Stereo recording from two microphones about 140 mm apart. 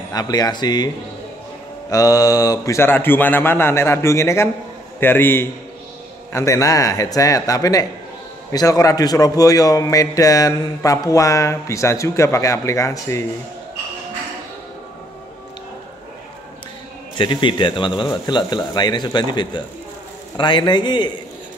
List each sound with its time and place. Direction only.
0.1 s a man's voice: 30° left (ahead or behind)
1.9 s a man's voice: 25° left (ahead or behind)
17.2 s speech: 35° left (ahead or behind)